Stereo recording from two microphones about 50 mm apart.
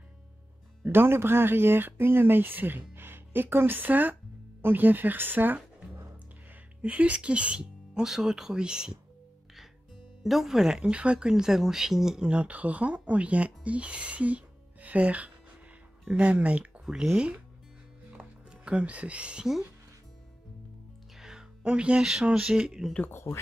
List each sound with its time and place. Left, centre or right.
0.8 s speech: right
6.8 s speech: right
10.2 s speech: centre
10.8 s speech: right
12.3 s speech: right
16.8 s speech: centre
18.1 s music: right
21.2 s music: centre
22.3 s speech: centre
23.0 s speech: left